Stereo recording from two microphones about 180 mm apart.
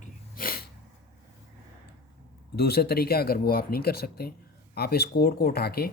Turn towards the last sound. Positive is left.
turn(degrees=60)  # may be behind; listen again after turning